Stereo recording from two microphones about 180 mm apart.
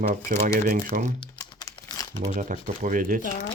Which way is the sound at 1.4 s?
20° left (ahead or behind).